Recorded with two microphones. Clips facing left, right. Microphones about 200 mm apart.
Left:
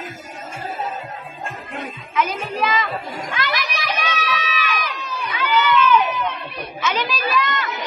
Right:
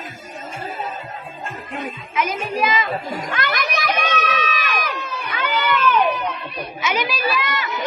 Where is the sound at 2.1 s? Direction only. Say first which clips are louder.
Even; 15° right (ahead or behind).